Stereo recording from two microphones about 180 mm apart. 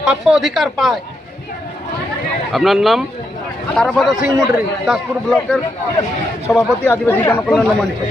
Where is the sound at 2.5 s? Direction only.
Centre (ahead or behind).